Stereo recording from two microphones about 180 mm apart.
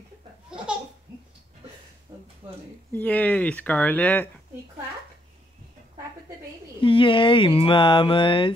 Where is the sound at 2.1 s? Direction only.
20° right (ahead or behind).